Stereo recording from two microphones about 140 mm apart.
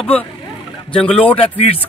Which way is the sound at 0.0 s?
10° left (ahead or behind).